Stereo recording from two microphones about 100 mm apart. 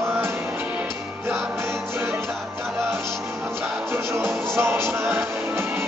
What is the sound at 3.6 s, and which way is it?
Music, 25° right (ahead or behind).